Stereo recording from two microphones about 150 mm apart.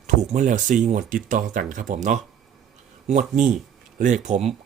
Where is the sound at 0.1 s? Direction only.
55° right (ahead or behind).